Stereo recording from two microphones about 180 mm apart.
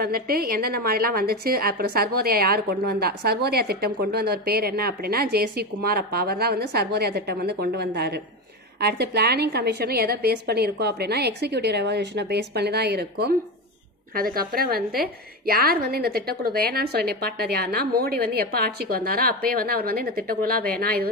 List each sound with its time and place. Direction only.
0.0 s a woman's voice: 60° right (ahead or behind)